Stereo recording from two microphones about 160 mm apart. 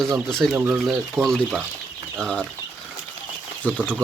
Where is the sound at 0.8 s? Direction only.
Centre (ahead or behind).